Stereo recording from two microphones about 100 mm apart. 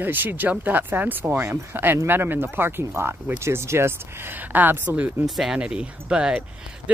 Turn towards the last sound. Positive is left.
turn(degrees=-10)  # may be behind; listen again after turning